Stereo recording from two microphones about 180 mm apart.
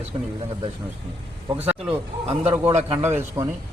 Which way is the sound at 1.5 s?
10° right (ahead or behind).